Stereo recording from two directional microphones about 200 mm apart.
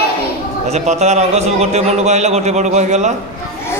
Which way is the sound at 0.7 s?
35° right (ahead or behind).